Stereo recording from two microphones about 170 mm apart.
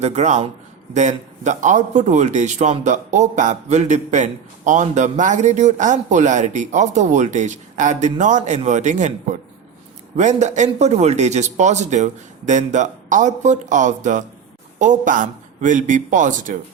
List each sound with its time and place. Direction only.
0.0 s a man's voice: 40° right (ahead or behind)